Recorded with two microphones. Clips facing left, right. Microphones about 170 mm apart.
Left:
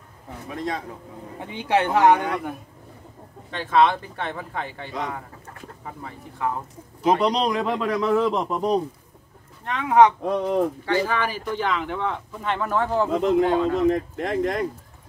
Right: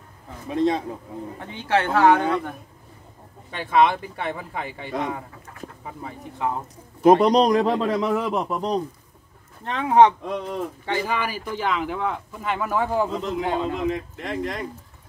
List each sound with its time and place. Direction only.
0.5 s a man's voice: 25° right (ahead or behind)
1.4 s speech: 15° left (ahead or behind)
3.4 s speech: 10° right (ahead or behind)
7.0 s speech: 50° right (ahead or behind); by 8.1 s 25° right (ahead or behind)
8.1 s a man's voice: 10° right (ahead or behind)
9.7 s speech: 30° right (ahead or behind)
10.2 s speech: 45° left (ahead or behind)
10.9 s speech: 10° right (ahead or behind)
13.2 s speech: 55° left (ahead or behind)